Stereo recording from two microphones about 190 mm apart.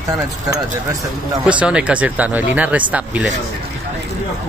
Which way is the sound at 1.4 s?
5° right (ahead or behind).